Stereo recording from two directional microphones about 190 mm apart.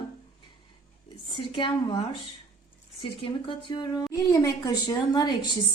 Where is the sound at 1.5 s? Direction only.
25° left (ahead or behind).